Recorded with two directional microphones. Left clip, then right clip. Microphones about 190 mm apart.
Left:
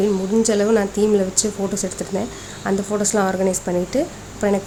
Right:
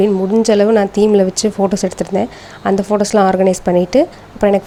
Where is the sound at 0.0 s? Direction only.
30° right (ahead or behind).